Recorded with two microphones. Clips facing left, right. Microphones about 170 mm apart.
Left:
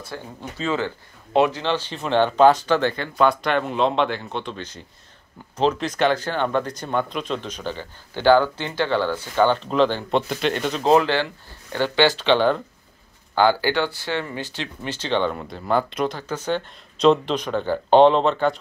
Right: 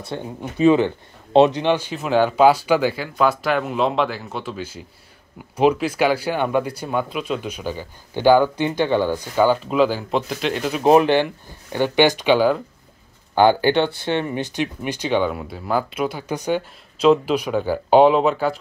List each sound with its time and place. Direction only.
0.1 s speech: 15° right (ahead or behind); by 10.8 s centre (ahead or behind)
10.8 s speech: 15° right (ahead or behind)